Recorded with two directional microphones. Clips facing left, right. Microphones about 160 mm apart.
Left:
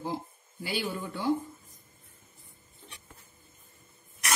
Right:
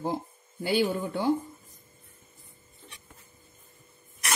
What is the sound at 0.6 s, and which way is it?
Speech, 50° right (ahead or behind).